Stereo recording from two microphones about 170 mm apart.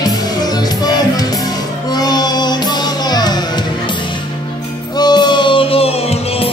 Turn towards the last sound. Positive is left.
turn(degrees=35)  # may be behind; listen again after turning